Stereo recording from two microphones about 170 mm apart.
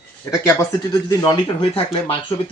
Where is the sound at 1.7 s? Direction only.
35° left (ahead or behind).